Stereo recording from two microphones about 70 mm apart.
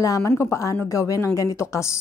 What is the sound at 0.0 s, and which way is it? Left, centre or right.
A woman's voice, left.